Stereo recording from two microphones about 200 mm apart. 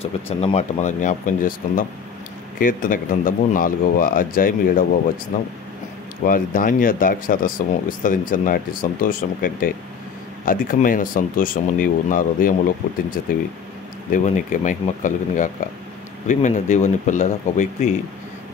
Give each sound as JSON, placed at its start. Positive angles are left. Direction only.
{"t": 0.0, "sound": "speech", "side_deg": 30}
{"t": 6.2, "sound": "speech", "side_deg": 45}